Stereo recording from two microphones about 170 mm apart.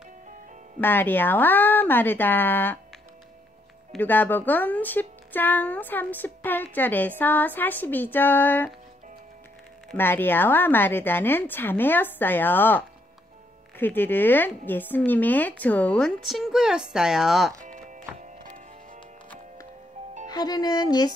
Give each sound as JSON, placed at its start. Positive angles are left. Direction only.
{"t": 0.7, "sound": "speech", "side_deg": 10}
{"t": 3.9, "sound": "speech", "side_deg": 10}
{"t": 9.9, "sound": "speech", "side_deg": 10}
{"t": 17.6, "sound": "music", "side_deg": -50}
{"t": 20.2, "sound": "speech", "side_deg": 25}